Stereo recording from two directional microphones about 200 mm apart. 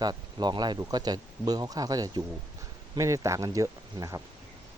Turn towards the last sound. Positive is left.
turn(degrees=-15)  # may be behind; listen again after turning